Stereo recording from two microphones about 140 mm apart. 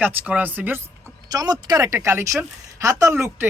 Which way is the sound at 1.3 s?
25° right (ahead or behind).